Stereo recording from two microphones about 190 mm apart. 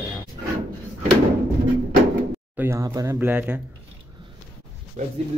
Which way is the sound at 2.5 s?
10° right (ahead or behind).